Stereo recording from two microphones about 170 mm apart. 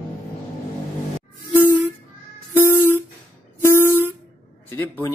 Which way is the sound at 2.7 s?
15° left (ahead or behind).